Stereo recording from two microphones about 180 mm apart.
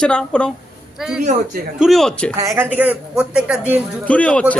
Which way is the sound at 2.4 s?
15° right (ahead or behind).